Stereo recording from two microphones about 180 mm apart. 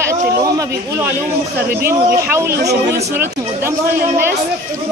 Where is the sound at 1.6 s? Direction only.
60° right (ahead or behind).